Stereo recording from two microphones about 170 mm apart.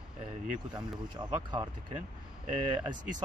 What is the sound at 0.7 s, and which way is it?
Speech, 25° right (ahead or behind).